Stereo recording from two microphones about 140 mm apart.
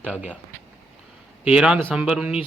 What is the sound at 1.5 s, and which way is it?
Speech, 5° right (ahead or behind).